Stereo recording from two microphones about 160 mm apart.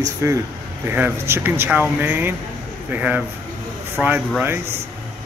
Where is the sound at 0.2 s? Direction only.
15° right (ahead or behind).